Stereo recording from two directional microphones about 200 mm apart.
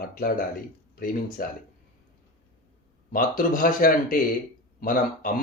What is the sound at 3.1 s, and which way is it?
Speech, 45° left (ahead or behind).